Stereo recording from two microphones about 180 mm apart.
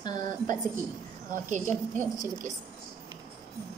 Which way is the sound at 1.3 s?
45° right (ahead or behind).